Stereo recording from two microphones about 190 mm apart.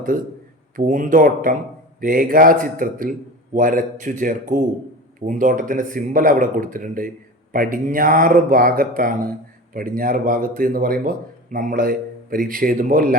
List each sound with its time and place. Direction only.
0.1 s a man's voice: 45° right (ahead or behind)